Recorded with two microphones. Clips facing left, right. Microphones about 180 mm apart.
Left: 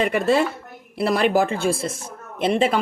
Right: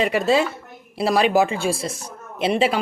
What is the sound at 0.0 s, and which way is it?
Speech, 55° left (ahead or behind).